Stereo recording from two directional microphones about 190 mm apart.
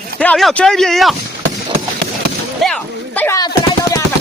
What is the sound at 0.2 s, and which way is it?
Speech, 5° left (ahead or behind).